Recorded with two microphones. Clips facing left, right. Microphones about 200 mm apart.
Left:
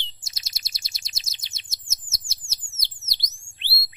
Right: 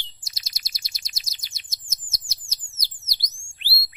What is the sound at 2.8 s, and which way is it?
Chirp tone, 25° left (ahead or behind).